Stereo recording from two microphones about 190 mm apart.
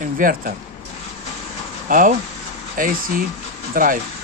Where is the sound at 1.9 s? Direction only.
45° right (ahead or behind).